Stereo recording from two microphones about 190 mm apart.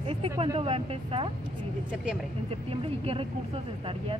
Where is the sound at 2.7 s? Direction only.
30° right (ahead or behind).